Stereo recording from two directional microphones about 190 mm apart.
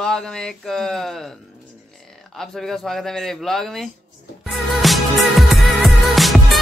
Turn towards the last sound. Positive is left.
turn(degrees=0)  # may be behind; listen again after turning